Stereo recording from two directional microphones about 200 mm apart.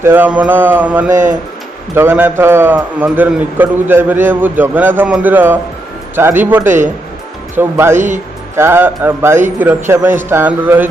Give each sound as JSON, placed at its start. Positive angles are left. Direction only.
{"t": 0.0, "sound": "a man's voice", "side_deg": -10}
{"t": 1.1, "sound": "speech", "side_deg": -40}
{"t": 2.0, "sound": "a man's voice", "side_deg": -10}
{"t": 7.9, "sound": "speech", "side_deg": -40}
{"t": 8.5, "sound": "a man's voice", "side_deg": -10}